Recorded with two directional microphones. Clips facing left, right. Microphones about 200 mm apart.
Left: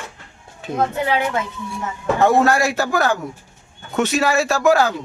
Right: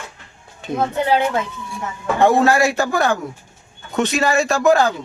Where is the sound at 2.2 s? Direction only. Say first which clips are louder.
Right 1 dB; centre (ahead or behind).